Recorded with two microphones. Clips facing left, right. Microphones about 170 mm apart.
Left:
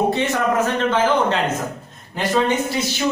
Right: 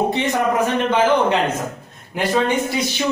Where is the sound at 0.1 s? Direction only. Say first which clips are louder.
Even; 15° right (ahead or behind).